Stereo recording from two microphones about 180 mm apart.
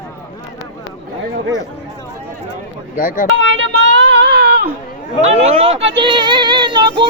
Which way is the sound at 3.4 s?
90° right.